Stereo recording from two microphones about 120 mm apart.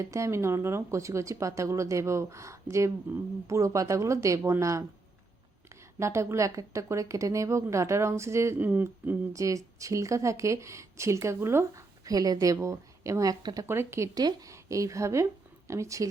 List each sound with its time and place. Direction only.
0.0 s a woman's voice: 25° right (ahead or behind)
9.3 s a woman's voice: 25° right (ahead or behind)
13.7 s a woman's voice: 20° right (ahead or behind)